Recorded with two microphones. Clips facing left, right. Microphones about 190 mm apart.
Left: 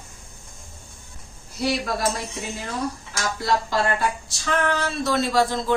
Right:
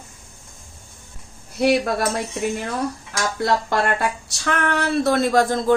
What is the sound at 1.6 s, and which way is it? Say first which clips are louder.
Speech: right 7 dB; 60° right (ahead or behind).